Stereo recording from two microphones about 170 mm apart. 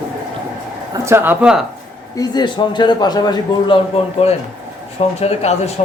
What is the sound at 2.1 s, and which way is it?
A man's voice, 25° left (ahead or behind).